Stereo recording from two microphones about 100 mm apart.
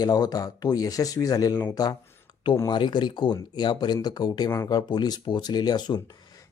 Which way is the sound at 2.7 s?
50° left (ahead or behind).